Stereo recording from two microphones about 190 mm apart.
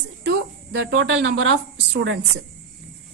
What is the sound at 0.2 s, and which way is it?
A woman's voice, 65° right (ahead or behind).